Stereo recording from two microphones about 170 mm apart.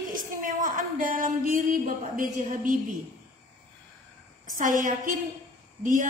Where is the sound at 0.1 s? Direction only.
50° right (ahead or behind).